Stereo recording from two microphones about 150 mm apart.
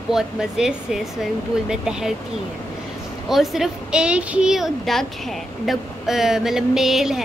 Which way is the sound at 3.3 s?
Centre (ahead or behind).